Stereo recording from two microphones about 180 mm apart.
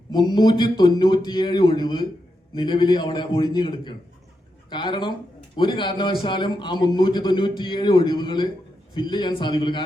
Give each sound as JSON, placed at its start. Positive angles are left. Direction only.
{"t": 0.1, "sound": "a man's voice", "side_deg": 25}